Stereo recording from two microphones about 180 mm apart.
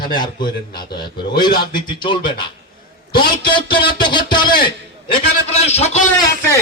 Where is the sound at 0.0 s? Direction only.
25° left (ahead or behind).